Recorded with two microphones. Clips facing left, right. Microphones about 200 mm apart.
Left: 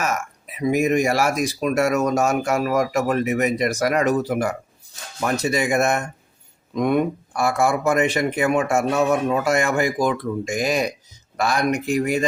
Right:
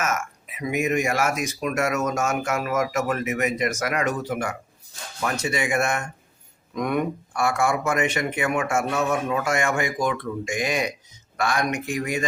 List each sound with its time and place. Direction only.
0.0 s speech: 35° left (ahead or behind)